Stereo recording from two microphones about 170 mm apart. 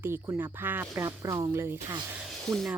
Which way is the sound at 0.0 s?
15° right (ahead or behind).